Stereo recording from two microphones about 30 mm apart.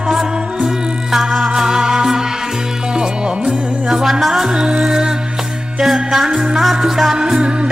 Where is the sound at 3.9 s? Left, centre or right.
Centre.